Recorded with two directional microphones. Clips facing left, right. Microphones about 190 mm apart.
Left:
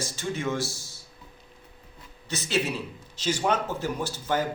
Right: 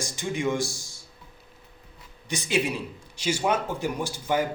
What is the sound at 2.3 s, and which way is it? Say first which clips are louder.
A man's voice: right 1 dB; 15° right (ahead or behind).